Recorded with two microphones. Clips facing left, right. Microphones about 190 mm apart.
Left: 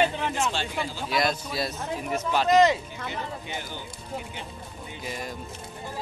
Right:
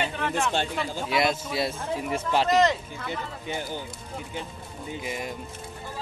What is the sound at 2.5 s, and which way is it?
Speech, centre (ahead or behind).